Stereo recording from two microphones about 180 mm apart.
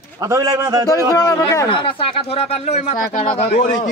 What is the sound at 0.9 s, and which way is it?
Speech, 20° left (ahead or behind).